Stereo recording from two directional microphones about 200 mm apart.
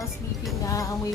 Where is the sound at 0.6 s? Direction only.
15° left (ahead or behind).